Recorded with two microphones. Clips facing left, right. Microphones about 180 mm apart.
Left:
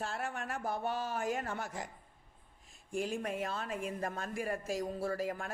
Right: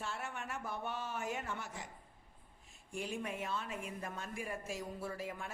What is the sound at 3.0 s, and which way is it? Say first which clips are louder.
Speech: left 5 dB; 45° left (ahead or behind).